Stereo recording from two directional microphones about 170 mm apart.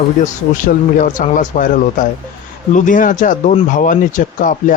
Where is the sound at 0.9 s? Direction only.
45° left (ahead or behind).